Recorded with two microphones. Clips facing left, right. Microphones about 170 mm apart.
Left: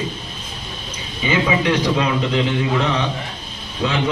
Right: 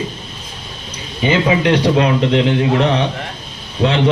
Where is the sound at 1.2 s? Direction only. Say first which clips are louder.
Right 4 dB; 65° right (ahead or behind).